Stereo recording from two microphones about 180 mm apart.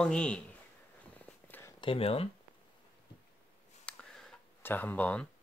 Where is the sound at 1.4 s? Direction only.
10° left (ahead or behind).